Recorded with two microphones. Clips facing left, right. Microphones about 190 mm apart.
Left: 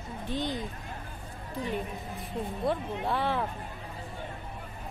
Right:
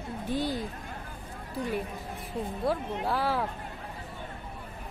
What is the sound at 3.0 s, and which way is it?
Speech, 5° right (ahead or behind).